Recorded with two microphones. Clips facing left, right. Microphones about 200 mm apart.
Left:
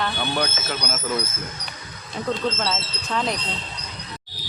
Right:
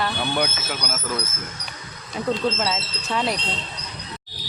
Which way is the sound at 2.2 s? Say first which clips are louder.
Right 2 dB; 5° right (ahead or behind).